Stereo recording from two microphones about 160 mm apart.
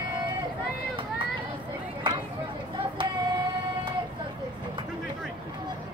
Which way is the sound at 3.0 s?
30° right (ahead or behind).